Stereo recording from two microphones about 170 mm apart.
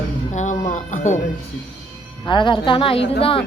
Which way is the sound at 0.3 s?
45° left (ahead or behind).